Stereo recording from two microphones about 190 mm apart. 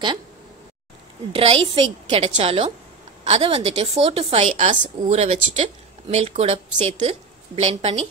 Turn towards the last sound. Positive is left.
turn(degrees=-35)  # may be behind; listen again after turning